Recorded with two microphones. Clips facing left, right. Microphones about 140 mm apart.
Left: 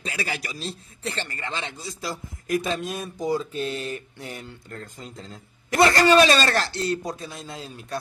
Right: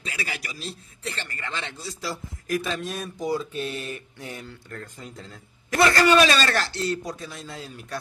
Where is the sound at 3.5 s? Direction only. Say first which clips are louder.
Left 2 dB; 40° left (ahead or behind).